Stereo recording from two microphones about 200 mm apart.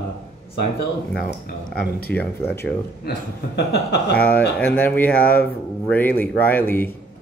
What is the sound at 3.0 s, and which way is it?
Speech, 55° left (ahead or behind).